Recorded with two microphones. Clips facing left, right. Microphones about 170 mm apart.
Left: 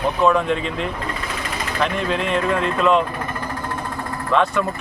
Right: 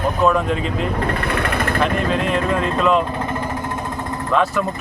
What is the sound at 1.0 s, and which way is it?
Vehicle, 60° right (ahead or behind).